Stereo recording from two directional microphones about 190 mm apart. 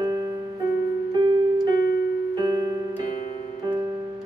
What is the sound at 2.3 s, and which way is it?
Music, 20° right (ahead or behind).